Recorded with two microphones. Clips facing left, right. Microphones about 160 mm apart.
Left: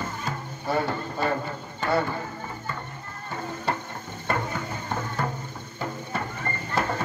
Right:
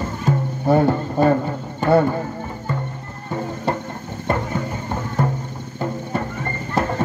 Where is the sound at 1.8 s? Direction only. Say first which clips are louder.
Right 9 dB; 50° right (ahead or behind).